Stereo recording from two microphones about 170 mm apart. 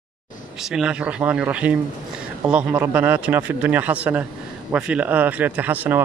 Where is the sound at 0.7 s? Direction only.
5° right (ahead or behind).